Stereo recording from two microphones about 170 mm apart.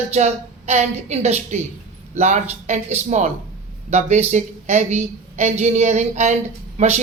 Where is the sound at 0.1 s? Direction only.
40° right (ahead or behind).